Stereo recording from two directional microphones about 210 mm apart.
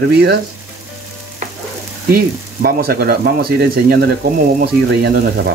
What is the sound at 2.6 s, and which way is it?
Speech, 45° right (ahead or behind).